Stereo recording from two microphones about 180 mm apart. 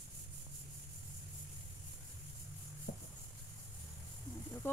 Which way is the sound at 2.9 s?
70° left (ahead or behind).